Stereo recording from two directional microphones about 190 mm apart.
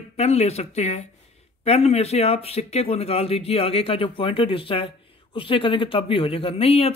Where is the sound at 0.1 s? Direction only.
35° left (ahead or behind).